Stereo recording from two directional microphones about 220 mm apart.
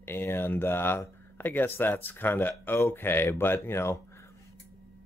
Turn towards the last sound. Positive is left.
turn(degrees=10)  # may be behind; listen again after turning